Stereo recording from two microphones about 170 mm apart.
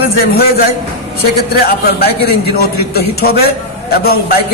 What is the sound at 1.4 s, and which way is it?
A man's voice, 65° left (ahead or behind).